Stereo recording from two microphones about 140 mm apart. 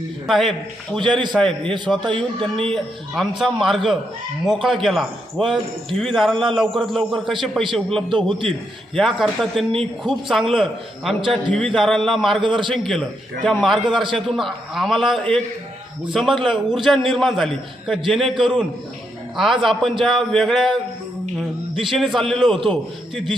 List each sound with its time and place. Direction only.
0.3 s a man's voice: centre (ahead or behind)
2.1 s speech: 40° right (ahead or behind)
2.7 s a man's voice: centre (ahead or behind)
8.1 s speech: 35° right (ahead or behind)
9.0 s a man's voice: centre (ahead or behind)
12.4 s speech: 35° right (ahead or behind)
12.7 s a man's voice: centre (ahead or behind)
13.8 s speech: 35° right (ahead or behind)
14.1 s a man's voice: centre (ahead or behind)
21.8 s a man's voice: centre (ahead or behind)